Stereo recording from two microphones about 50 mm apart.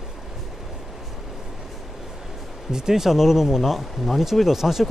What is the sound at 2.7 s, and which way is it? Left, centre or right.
Speech, centre.